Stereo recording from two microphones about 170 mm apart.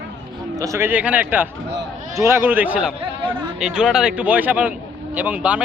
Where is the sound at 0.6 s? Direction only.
15° right (ahead or behind).